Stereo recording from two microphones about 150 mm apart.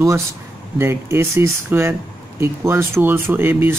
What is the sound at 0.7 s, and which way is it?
Speech, 15° right (ahead or behind).